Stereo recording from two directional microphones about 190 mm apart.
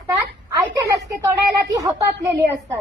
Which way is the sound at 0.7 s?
15° right (ahead or behind).